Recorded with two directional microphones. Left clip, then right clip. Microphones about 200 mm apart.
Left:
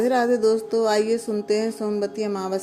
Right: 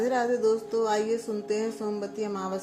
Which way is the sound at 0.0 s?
40° left (ahead or behind).